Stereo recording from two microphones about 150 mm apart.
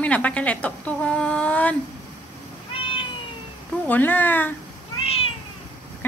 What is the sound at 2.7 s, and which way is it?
Cat, 35° left (ahead or behind).